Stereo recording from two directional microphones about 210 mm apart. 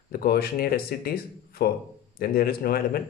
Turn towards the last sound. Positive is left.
turn(degrees=45)  # may be behind; listen again after turning